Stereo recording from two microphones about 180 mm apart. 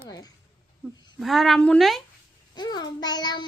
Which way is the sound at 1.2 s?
Centre (ahead or behind).